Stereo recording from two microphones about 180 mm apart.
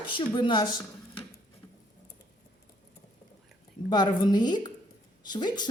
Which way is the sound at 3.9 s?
25° left (ahead or behind).